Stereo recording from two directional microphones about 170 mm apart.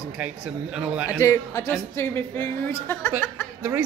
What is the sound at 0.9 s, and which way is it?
Speech, 10° right (ahead or behind).